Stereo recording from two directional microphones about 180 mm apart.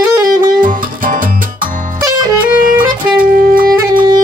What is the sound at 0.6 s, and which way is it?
Music, 50° right (ahead or behind).